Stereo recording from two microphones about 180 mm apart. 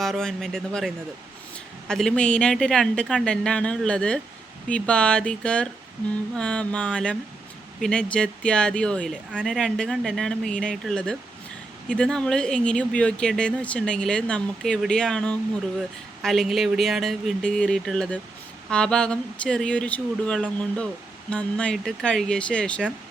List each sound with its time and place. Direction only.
0.0 s speech: centre (ahead or behind)